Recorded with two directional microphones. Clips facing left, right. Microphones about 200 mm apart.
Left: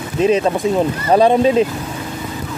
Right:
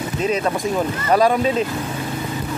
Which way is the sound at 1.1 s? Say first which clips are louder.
Left 4 dB; 25° left (ahead or behind).